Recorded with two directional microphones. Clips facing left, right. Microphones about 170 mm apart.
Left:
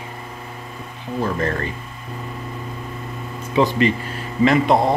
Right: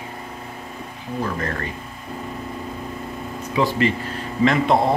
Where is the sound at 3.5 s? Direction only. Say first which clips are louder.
Left 3 dB; 20° left (ahead or behind).